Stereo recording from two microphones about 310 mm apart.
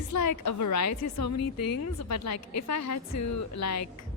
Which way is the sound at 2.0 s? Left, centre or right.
Left.